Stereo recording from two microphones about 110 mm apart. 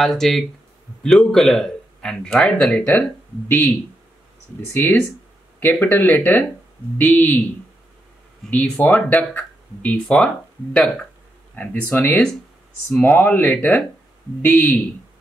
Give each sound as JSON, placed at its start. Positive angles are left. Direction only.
{"t": 0.0, "sound": "speech", "side_deg": 0}
{"t": 5.6, "sound": "speech", "side_deg": 15}
{"t": 8.5, "sound": "speech", "side_deg": 15}